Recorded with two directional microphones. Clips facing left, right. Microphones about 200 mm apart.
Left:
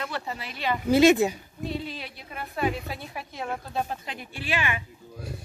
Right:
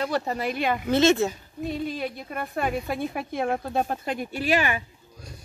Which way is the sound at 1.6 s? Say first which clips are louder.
Right 5 dB; 50° right (ahead or behind).